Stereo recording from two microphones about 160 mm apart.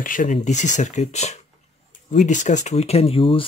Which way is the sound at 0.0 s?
55° left (ahead or behind).